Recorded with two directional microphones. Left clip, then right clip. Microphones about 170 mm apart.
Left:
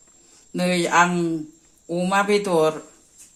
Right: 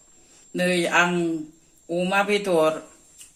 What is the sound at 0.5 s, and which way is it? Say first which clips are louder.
Speech: left 2 dB; 50° left (ahead or behind).